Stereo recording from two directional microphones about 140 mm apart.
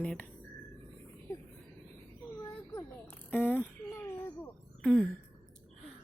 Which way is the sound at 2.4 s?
25° left (ahead or behind).